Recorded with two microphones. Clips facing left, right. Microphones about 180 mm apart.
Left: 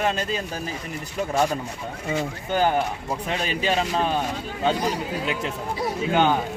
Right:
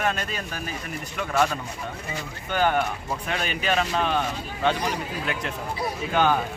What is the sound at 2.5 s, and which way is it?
Speech, 30° left (ahead or behind).